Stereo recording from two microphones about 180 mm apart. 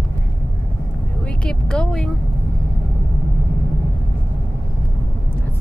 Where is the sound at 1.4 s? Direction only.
5° left (ahead or behind).